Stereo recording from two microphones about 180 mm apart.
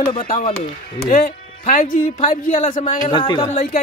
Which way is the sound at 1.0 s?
50° left (ahead or behind).